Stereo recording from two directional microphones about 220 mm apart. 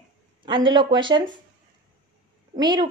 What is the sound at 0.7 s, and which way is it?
Speech, 20° right (ahead or behind).